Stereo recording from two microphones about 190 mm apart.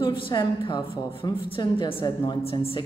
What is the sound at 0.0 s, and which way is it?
A woman's voice, 25° left (ahead or behind).